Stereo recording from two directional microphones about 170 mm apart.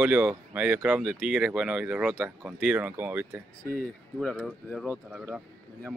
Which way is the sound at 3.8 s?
5° left (ahead or behind).